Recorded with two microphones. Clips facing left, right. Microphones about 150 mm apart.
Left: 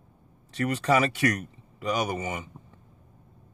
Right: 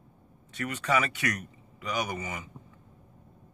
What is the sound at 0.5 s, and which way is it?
Speech, 35° left (ahead or behind).